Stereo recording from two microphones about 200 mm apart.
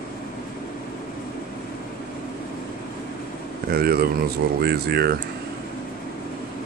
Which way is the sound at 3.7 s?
50° right (ahead or behind).